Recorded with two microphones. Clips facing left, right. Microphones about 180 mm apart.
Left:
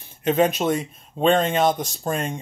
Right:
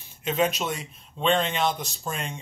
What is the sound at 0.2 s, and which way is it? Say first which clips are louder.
Speech: left 6 dB; 50° left (ahead or behind).